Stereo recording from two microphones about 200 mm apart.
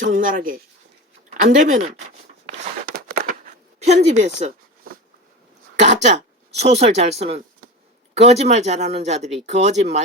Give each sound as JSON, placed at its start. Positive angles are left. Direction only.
{"t": 0.0, "sound": "speech", "side_deg": -40}
{"t": 3.1, "sound": "a sound", "side_deg": -45}
{"t": 5.7, "sound": "speech", "side_deg": -35}